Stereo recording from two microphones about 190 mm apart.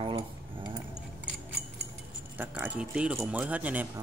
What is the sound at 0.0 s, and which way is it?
Cutlery, 30° right (ahead or behind).